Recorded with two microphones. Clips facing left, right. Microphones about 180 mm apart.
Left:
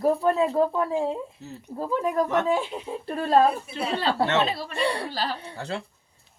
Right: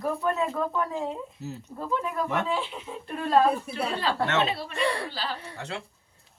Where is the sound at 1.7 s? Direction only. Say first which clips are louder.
Left 6 dB; 40° left (ahead or behind).